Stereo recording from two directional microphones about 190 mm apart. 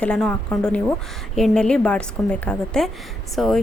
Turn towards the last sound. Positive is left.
turn(degrees=0)  # may be behind; listen again after turning